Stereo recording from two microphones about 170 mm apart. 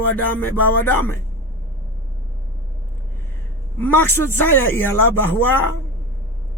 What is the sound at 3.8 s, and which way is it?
Speech, 15° left (ahead or behind).